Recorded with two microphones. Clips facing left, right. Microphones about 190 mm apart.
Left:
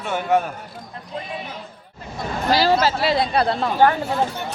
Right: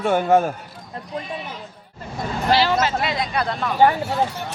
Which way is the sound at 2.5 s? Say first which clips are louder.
Left 2 dB; 35° left (ahead or behind).